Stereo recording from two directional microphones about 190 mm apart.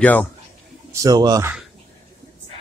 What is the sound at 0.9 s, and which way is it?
Speech, 20° right (ahead or behind).